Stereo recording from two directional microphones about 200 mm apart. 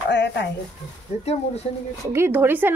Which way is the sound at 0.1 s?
60° left (ahead or behind).